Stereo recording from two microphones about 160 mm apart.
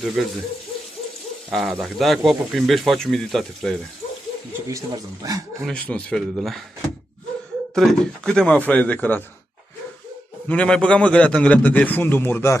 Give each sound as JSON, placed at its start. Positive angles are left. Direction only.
{"t": 0.0, "sound": "speech", "side_deg": 0}
{"t": 1.5, "sound": "speech", "side_deg": 0}
{"t": 4.6, "sound": "speech", "side_deg": -20}
{"t": 5.7, "sound": "speech", "side_deg": 5}
{"t": 7.7, "sound": "a man's voice", "side_deg": 5}
{"t": 10.5, "sound": "a man's voice", "side_deg": 5}